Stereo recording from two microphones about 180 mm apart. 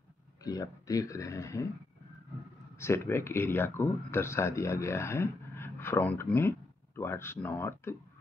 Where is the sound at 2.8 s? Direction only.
15° left (ahead or behind).